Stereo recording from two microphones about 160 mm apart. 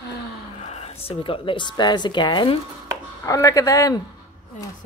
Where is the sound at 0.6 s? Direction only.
40° left (ahead or behind).